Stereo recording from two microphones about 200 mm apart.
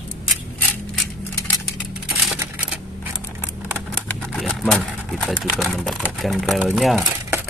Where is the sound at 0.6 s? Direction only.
5° left (ahead or behind).